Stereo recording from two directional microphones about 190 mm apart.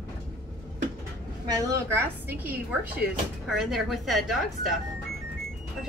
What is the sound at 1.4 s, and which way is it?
A woman's voice, 10° right (ahead or behind).